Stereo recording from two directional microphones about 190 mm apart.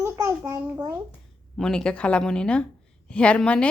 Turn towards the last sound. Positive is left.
turn(degrees=5)  # may be behind; listen again after turning